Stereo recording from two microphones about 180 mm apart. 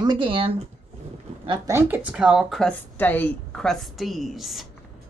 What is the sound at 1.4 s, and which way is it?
Speech, 15° right (ahead or behind).